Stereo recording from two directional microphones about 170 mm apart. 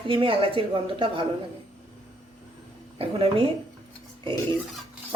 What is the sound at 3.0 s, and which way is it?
Speech, 30° right (ahead or behind).